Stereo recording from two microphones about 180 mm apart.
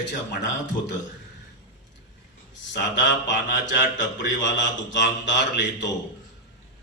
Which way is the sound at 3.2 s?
80° left.